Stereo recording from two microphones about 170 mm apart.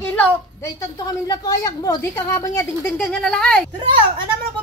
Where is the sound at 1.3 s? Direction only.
20° left (ahead or behind); by 3.6 s 5° left (ahead or behind).